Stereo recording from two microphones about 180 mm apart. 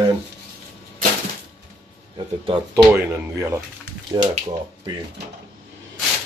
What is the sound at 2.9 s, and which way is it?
Speech, 15° right (ahead or behind).